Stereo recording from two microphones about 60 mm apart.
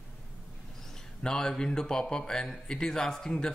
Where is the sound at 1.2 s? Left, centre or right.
Centre.